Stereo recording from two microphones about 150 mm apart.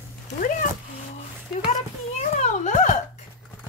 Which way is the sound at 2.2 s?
55° left (ahead or behind).